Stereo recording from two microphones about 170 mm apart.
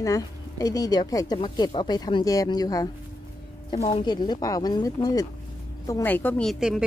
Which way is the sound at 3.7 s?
30° left (ahead or behind).